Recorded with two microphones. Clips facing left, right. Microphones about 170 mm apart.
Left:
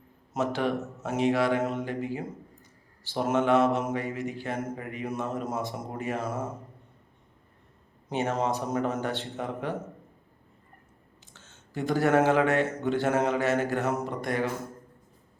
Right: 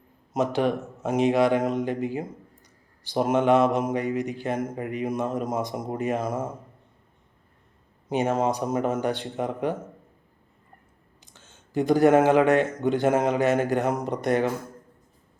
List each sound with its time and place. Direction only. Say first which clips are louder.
0.3 s speech: right 4 dB; 15° right (ahead or behind)
8.1 s speech: right 4 dB; 10° right (ahead or behind)
11.3 s speech: right 7 dB; 15° right (ahead or behind)